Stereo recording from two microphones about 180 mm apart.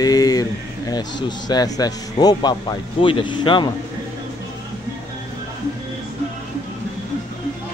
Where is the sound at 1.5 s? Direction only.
20° left (ahead or behind).